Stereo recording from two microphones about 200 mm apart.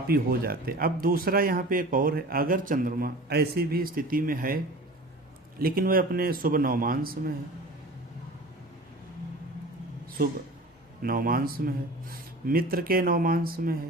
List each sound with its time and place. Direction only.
0.1 s speech: 50° right (ahead or behind)
11.0 s speech: 45° right (ahead or behind)